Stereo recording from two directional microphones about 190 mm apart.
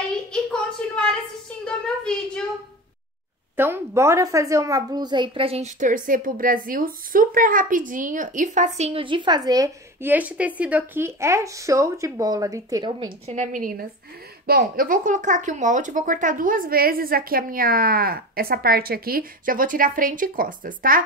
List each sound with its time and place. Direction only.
0.3 s a sound: 5° left (ahead or behind)
3.5 s a woman's voice: 10° right (ahead or behind); by 5.7 s 30° right (ahead or behind)
5.8 s a woman's voice: 45° right (ahead or behind); by 13.1 s 20° right (ahead or behind)
13.3 s a woman's voice: 40° right (ahead or behind)